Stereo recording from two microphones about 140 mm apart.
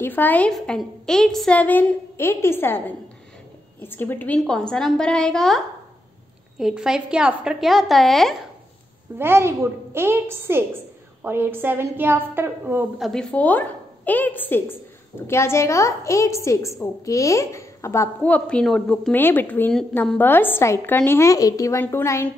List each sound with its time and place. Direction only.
0.0 s a woman's voice: 15° left (ahead or behind)
3.8 s a woman's voice: 15° left (ahead or behind)
6.6 s a woman's voice: 5° right (ahead or behind)
9.2 s a woman's voice: 15° right (ahead or behind)
13.0 s a woman's voice: 5° left (ahead or behind); by 18.1 s 20° left (ahead or behind)
18.2 s a woman's voice: 10° left (ahead or behind)